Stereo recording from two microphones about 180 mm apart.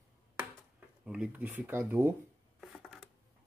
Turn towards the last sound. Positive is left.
turn(degrees=0)  # may be behind; listen again after turning